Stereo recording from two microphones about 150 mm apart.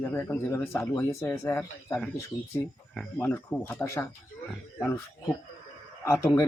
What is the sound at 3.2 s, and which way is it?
Speech, 15° left (ahead or behind).